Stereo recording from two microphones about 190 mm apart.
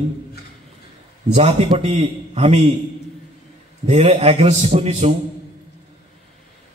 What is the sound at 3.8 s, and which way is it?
A man's voice, 35° right (ahead or behind).